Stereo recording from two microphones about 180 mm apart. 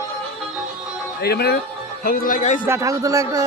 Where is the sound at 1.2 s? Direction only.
60° left (ahead or behind).